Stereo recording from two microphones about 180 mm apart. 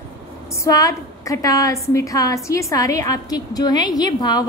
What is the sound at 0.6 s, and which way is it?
A woman's voice, 20° left (ahead or behind).